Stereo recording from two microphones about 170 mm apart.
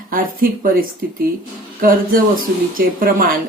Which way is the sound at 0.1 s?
55° right (ahead or behind).